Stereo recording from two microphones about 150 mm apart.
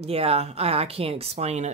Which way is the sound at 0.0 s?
40° right (ahead or behind).